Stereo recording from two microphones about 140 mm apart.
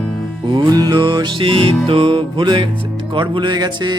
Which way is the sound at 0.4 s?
35° right (ahead or behind).